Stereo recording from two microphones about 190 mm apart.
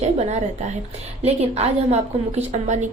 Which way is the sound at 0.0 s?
35° right (ahead or behind).